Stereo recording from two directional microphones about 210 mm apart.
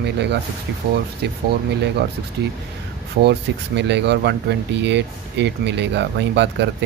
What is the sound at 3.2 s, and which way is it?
Speech, 55° right (ahead or behind).